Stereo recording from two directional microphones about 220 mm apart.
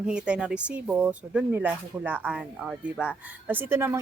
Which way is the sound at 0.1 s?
5° right (ahead or behind).